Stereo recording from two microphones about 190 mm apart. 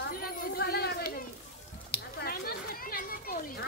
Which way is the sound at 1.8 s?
55° left (ahead or behind).